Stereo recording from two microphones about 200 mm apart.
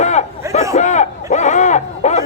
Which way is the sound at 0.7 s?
35° left (ahead or behind).